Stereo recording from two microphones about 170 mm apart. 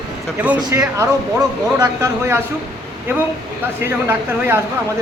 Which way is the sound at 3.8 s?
15° right (ahead or behind).